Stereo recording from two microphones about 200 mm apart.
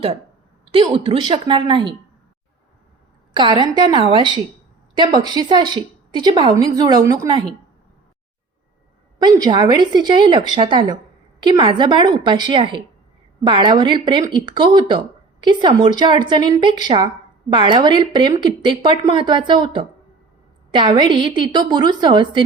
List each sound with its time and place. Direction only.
0.7 s speech: 25° right (ahead or behind)
3.3 s speech: 25° right (ahead or behind)
9.1 s speech: 20° right (ahead or behind)